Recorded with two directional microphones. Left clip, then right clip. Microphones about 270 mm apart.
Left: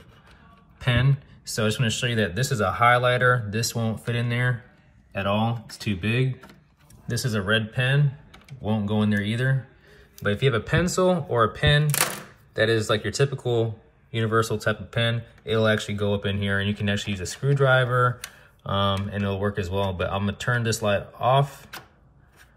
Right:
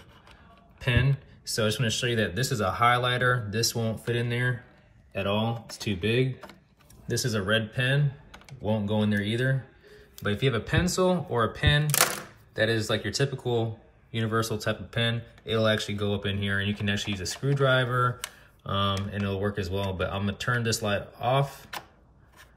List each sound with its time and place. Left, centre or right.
0.7 s speech: centre